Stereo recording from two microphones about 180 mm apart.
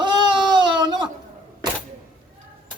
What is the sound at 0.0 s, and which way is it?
Baby cry, 25° right (ahead or behind).